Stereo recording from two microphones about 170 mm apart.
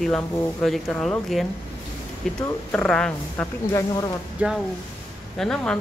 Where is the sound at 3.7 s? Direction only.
20° left (ahead or behind).